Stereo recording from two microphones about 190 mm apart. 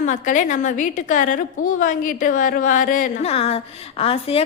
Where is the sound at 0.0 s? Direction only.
40° left (ahead or behind).